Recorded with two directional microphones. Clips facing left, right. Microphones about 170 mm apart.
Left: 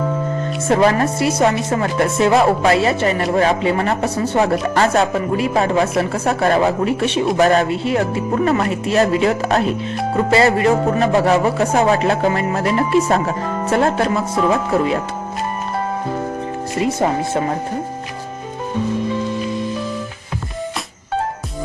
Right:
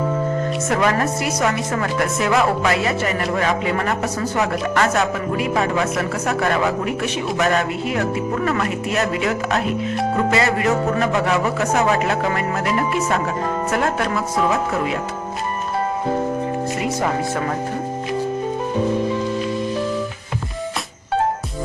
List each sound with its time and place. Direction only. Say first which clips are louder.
0.7 s speech: left 6 dB; 30° left (ahead or behind)